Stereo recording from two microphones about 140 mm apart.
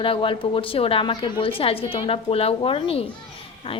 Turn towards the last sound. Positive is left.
turn(degrees=40)  # may be behind; listen again after turning